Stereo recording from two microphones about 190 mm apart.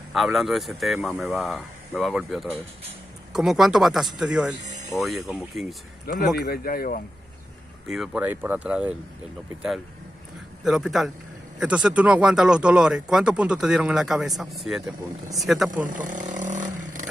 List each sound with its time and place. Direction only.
0.1 s speech: centre (ahead or behind)
6.3 s speech: 55° left (ahead or behind)
7.9 s speech: 5° right (ahead or behind)
10.6 s speech: centre (ahead or behind)
15.7 s speech: 45° right (ahead or behind)